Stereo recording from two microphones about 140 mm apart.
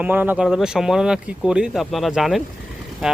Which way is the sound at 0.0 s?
10° right (ahead or behind).